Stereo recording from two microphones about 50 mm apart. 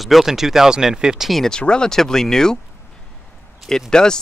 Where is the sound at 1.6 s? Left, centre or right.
Centre.